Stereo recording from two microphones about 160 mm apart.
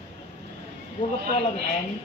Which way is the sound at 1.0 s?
30° left (ahead or behind).